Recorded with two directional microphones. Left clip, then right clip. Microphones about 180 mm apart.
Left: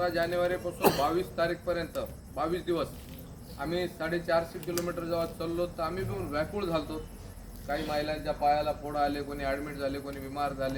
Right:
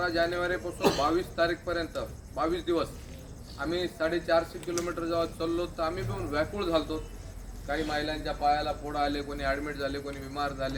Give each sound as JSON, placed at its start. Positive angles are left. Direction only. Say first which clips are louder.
{"t": 0.0, "sound": "speech", "louder": "even", "side_deg": 5}
{"t": 0.8, "sound": "a man's voice", "louder": "left 1 dB", "side_deg": 50}
{"t": 1.0, "sound": "a man's voice", "louder": "right 2 dB", "side_deg": 0}